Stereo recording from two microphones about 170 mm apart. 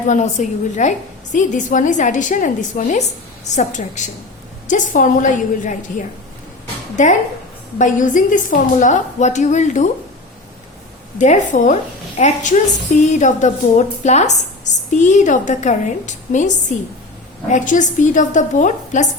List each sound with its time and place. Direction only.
0.1 s a woman's voice: 45° left (ahead or behind)
6.9 s a woman's voice: 45° left (ahead or behind)
11.2 s a woman's voice: 45° left (ahead or behind)